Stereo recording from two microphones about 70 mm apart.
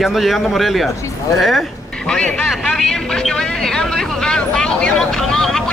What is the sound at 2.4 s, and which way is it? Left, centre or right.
Speech, centre.